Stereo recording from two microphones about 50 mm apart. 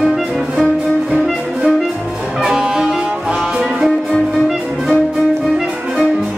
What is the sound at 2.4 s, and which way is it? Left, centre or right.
Music, centre.